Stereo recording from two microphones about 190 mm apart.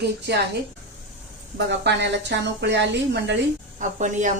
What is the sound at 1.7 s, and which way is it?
A woman's voice, 65° right (ahead or behind).